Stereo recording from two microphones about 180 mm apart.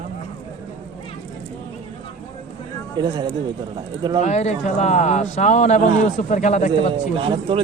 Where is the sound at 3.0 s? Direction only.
25° right (ahead or behind).